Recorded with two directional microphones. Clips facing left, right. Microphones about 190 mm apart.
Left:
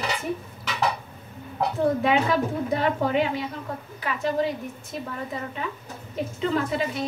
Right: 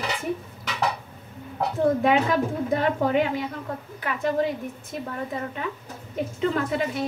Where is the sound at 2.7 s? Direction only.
50° right (ahead or behind).